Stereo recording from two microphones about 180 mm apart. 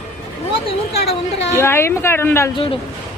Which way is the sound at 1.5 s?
15° left (ahead or behind).